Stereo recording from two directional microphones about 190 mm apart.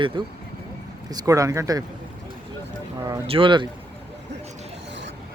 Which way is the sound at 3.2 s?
30° right (ahead or behind).